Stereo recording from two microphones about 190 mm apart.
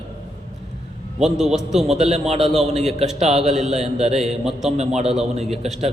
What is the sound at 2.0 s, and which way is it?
Speech, 35° right (ahead or behind).